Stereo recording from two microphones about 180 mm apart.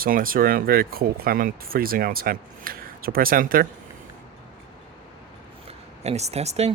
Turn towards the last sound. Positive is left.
turn(degrees=-35)  # may be behind; listen again after turning